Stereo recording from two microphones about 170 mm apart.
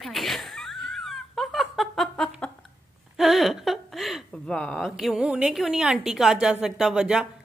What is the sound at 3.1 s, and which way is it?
Speech, centre (ahead or behind).